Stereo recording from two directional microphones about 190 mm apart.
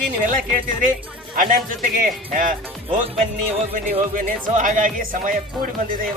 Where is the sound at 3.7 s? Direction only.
45° right (ahead or behind).